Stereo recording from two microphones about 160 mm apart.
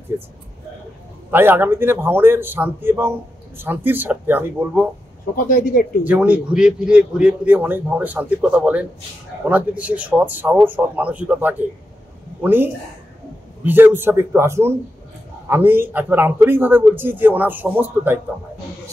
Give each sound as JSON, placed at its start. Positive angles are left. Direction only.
{"t": 1.3, "sound": "a man's voice", "side_deg": -15}
{"t": 5.3, "sound": "speech", "side_deg": 60}
{"t": 6.0, "sound": "a man's voice", "side_deg": -10}
{"t": 13.7, "sound": "a man's voice", "side_deg": -10}